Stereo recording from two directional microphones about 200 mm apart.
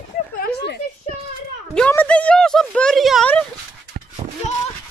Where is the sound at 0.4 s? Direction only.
55° left (ahead or behind).